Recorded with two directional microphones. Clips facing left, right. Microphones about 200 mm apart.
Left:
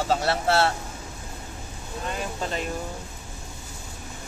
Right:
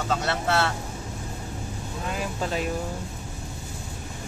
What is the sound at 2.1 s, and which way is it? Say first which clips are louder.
Speech: right 1 dB; 5° right (ahead or behind).